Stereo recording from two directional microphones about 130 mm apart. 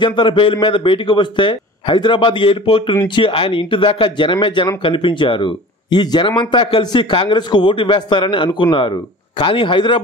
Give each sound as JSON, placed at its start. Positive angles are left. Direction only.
{"t": 0.0, "sound": "a man's voice", "side_deg": 40}